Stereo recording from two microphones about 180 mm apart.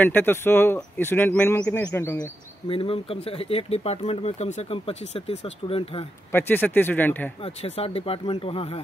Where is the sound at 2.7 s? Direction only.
30° left (ahead or behind).